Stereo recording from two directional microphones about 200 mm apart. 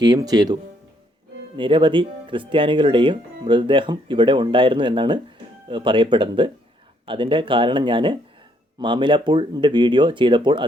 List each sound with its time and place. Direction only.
0.0 s speech: 20° right (ahead or behind)